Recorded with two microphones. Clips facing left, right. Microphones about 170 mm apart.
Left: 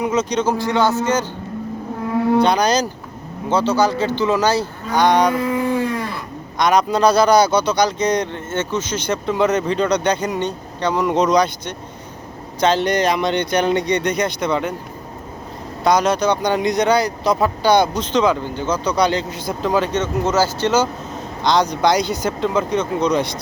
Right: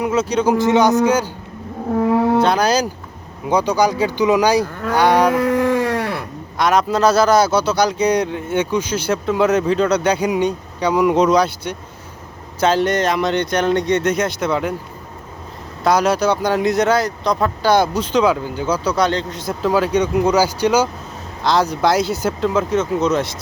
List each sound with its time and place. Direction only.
0.0 s speech: 5° right (ahead or behind)
0.5 s speech: 20° right (ahead or behind)
2.4 s speech: 5° right (ahead or behind)
5.3 s sheep: 80° right
6.6 s speech: centre (ahead or behind)
15.8 s speech: 5° right (ahead or behind)